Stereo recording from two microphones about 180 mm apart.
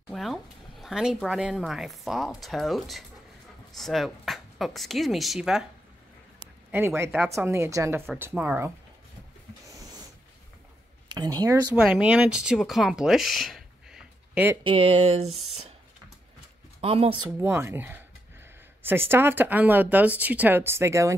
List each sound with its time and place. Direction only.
0.1 s speech: centre (ahead or behind)
6.7 s speech: 15° right (ahead or behind)
9.8 s a sound: 20° right (ahead or behind)
11.1 s speech: 20° right (ahead or behind)
11.7 s speech: 5° right (ahead or behind)
14.6 s speech: 30° right (ahead or behind)
16.8 s speech: 30° right (ahead or behind)
17.4 s speech: 15° right (ahead or behind)